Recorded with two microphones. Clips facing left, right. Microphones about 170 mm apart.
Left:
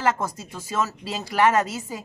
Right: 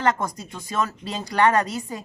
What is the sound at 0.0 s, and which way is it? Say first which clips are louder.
Speech: right 1 dB; 5° left (ahead or behind).